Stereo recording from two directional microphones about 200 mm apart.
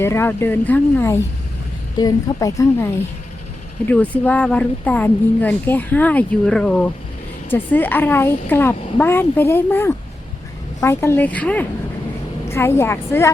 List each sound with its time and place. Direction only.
0.0 s speech: 10° left (ahead or behind)